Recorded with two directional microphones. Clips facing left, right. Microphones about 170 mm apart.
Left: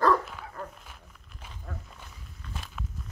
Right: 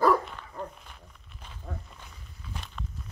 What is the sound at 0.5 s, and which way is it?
Bow-wow, centre (ahead or behind).